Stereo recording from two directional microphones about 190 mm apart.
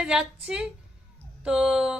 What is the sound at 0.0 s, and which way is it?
A woman's voice, 5° right (ahead or behind).